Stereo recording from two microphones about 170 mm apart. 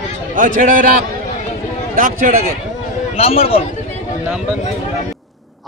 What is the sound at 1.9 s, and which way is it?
Speech, 55° right (ahead or behind).